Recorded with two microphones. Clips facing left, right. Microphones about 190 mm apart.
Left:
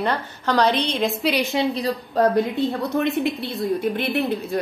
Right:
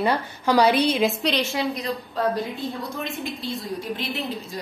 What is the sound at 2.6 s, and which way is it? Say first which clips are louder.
A woman's voice: left 8 dB; 65° left (ahead or behind).